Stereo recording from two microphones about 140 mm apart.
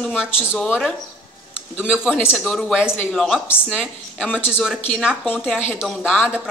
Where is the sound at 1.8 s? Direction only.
5° right (ahead or behind); by 4.5 s 10° left (ahead or behind).